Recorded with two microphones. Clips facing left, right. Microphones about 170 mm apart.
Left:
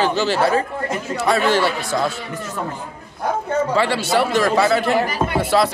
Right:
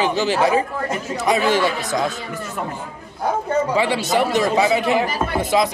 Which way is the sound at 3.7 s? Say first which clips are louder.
Left 1 dB; 15° right (ahead or behind).